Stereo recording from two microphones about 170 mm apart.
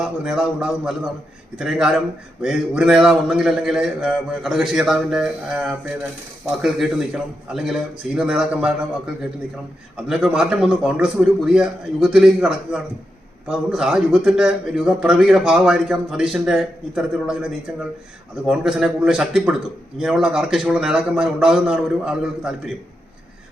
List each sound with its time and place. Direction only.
0.0 s a man's voice: 5° right (ahead or behind)
10.1 s a man's voice: 5° right (ahead or behind)
18.4 s a man's voice: 5° right (ahead or behind)